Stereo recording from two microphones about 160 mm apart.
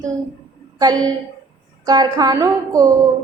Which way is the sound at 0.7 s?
25° right (ahead or behind).